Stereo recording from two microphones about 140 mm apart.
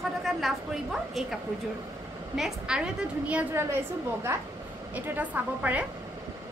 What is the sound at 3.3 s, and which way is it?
A woman's voice, 15° right (ahead or behind).